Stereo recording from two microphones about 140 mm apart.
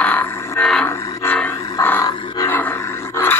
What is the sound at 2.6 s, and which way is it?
Roar, 15° left (ahead or behind).